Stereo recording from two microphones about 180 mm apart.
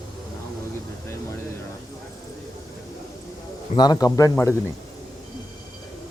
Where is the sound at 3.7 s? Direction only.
25° left (ahead or behind).